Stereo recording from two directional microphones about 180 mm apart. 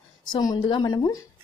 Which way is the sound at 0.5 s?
25° left (ahead or behind).